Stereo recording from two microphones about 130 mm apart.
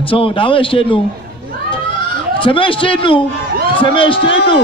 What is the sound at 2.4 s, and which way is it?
A man's voice, 40° left (ahead or behind).